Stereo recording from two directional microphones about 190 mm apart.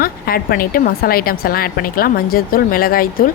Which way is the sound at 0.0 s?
50° left (ahead or behind).